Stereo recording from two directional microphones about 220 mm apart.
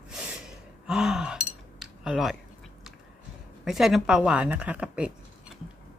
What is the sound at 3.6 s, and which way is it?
Speech, centre (ahead or behind).